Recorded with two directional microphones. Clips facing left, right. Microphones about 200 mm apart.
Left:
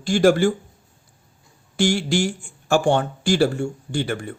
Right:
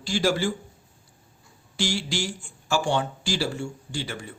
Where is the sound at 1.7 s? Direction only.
55° left (ahead or behind).